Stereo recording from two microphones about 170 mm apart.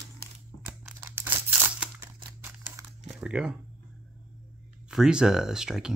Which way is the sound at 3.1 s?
5° right (ahead or behind).